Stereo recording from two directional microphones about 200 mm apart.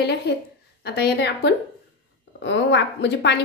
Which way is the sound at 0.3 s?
55° left (ahead or behind).